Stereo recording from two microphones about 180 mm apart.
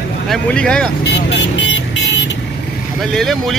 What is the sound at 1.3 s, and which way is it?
Vehicle, 90° left.